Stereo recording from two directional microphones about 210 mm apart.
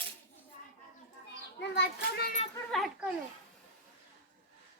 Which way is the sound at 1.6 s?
55° left (ahead or behind).